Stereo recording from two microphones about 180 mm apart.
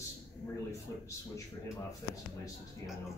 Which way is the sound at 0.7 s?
15° left (ahead or behind).